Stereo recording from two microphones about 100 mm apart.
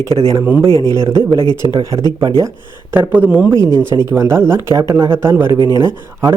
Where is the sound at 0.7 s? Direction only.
35° left (ahead or behind).